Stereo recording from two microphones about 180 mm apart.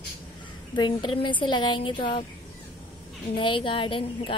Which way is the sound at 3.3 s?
30° left (ahead or behind).